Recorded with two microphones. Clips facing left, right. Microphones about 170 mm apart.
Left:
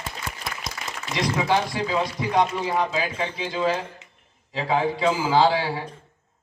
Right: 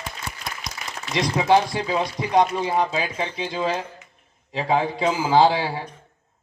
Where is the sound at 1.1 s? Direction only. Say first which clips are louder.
Right 4 dB; 20° right (ahead or behind).